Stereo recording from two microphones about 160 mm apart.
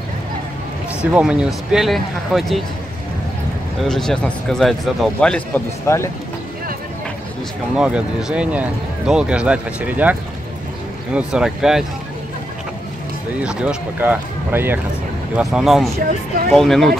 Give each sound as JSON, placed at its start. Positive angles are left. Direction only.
{"t": 1.1, "sound": "speech", "side_deg": -5}
{"t": 3.8, "sound": "speech", "side_deg": 5}
{"t": 5.9, "sound": "speech", "side_deg": 15}
{"t": 7.7, "sound": "speech", "side_deg": -5}
{"t": 11.1, "sound": "speech", "side_deg": -5}
{"t": 13.4, "sound": "speech", "side_deg": -5}